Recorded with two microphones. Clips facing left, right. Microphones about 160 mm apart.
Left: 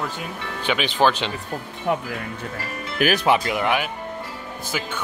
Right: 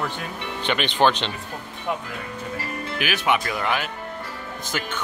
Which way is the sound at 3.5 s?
15° left (ahead or behind).